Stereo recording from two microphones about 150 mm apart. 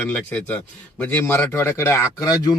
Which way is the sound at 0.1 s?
10° left (ahead or behind).